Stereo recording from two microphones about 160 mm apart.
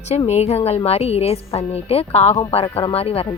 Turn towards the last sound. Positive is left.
turn(degrees=35)  # may be behind; listen again after turning